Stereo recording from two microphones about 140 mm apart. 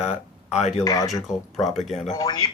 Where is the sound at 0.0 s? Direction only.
55° left (ahead or behind).